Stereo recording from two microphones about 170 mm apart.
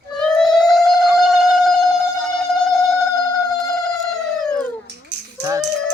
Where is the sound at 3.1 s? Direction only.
20° left (ahead or behind).